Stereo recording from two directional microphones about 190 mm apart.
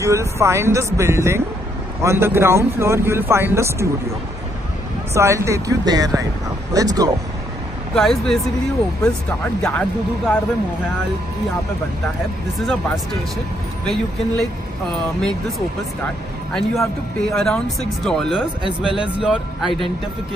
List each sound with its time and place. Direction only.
0.0 s speech: 15° right (ahead or behind)
5.1 s speech: 15° right (ahead or behind)
7.9 s speech: centre (ahead or behind)
9.6 s speech: 5° left (ahead or behind)
12.5 s speech: centre (ahead or behind)
16.5 s speech: centre (ahead or behind)
18.0 s speech: centre (ahead or behind)